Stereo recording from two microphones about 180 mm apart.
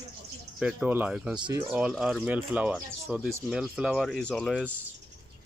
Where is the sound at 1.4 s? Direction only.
15° right (ahead or behind).